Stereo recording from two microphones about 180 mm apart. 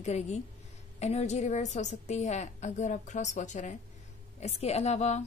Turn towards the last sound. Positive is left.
turn(degrees=40)  # may be behind; listen again after turning